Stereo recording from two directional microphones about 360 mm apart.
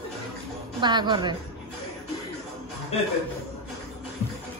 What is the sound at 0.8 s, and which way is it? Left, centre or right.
Speech, centre.